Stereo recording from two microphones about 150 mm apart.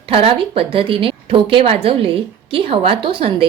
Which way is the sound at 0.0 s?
40° right (ahead or behind).